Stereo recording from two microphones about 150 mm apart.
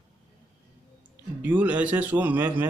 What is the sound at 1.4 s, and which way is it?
A man's voice, 10° right (ahead or behind).